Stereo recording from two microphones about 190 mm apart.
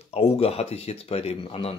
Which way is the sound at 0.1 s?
30° left (ahead or behind).